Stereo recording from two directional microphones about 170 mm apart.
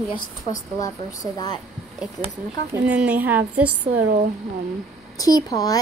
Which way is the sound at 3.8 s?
45° right (ahead or behind).